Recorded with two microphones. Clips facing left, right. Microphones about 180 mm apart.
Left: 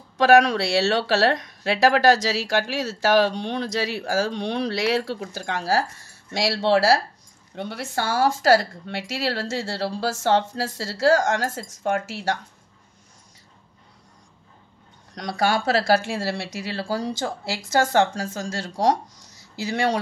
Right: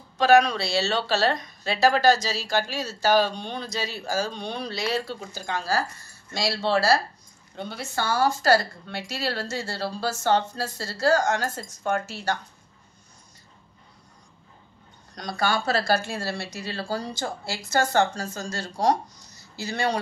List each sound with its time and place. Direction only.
0.2 s speech: 85° left
15.1 s speech: 90° left